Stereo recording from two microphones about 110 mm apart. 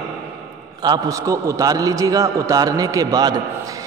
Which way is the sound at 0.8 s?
35° right (ahead or behind).